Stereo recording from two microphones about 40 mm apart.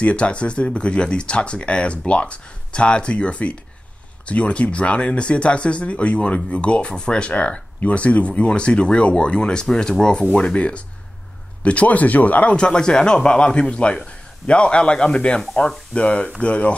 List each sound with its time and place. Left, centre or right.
0.0 s speech: left
12.5 s speech: left